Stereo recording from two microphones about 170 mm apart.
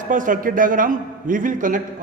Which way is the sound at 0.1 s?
50° right (ahead or behind).